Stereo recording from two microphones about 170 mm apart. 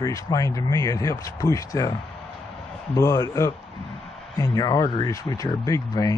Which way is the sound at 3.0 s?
20° left (ahead or behind).